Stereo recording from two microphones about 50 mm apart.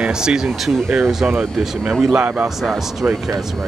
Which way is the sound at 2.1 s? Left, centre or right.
Right.